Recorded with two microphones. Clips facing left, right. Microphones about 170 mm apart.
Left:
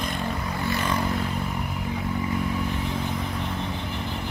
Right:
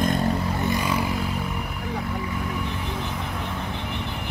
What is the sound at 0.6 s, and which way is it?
Vehicle, 15° right (ahead or behind).